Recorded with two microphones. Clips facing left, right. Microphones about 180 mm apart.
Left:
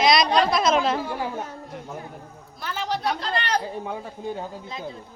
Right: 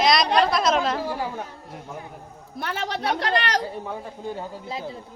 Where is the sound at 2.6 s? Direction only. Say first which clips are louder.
Even; 65° right (ahead or behind); by 3.6 s 85° right.